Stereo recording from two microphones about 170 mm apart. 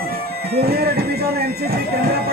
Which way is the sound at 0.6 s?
65° right (ahead or behind).